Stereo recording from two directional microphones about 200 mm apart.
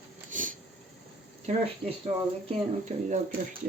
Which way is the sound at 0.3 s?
40° right (ahead or behind).